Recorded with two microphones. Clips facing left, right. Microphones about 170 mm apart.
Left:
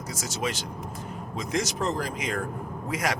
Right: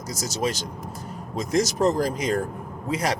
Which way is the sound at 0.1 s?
40° right (ahead or behind).